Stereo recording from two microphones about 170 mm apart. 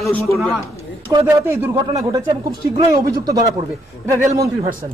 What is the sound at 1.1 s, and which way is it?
A man's voice, 15° right (ahead or behind).